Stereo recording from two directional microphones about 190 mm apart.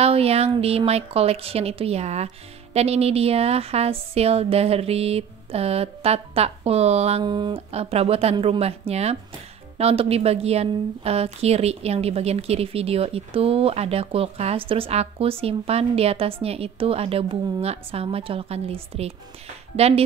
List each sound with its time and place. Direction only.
0.0 s a woman's voice: 30° right (ahead or behind)